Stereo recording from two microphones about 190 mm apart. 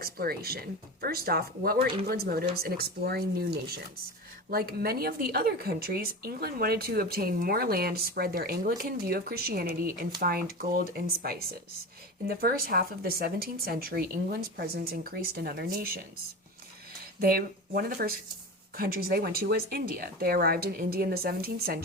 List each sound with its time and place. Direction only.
0.0 s speech: 55° right (ahead or behind)
17.2 s speech: 50° right (ahead or behind)